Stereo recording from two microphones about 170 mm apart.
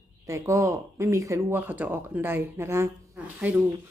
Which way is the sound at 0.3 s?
20° right (ahead or behind).